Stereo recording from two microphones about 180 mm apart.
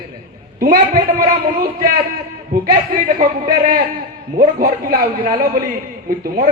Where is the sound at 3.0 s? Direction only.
50° right (ahead or behind).